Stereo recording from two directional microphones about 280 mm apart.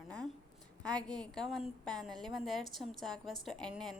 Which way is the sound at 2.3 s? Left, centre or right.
Centre.